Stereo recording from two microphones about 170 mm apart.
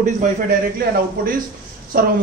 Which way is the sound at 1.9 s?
60° right (ahead or behind).